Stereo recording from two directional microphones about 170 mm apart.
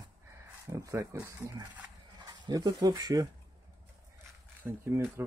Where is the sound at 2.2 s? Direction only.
25° right (ahead or behind).